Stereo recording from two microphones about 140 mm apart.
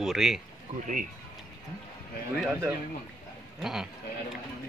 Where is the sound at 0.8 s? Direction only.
65° right (ahead or behind).